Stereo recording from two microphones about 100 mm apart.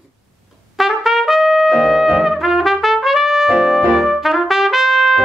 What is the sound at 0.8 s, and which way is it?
Trumpet, centre (ahead or behind).